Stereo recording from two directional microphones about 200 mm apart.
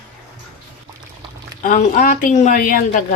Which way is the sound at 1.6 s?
40° left (ahead or behind).